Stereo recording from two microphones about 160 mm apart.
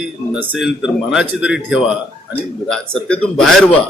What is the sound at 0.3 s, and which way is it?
Speech, 5° right (ahead or behind).